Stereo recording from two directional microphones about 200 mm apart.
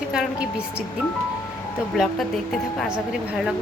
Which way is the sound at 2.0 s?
Centre (ahead or behind).